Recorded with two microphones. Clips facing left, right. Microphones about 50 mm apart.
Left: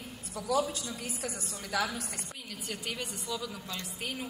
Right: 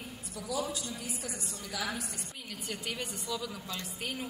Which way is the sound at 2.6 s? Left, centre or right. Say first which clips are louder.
Even; centre.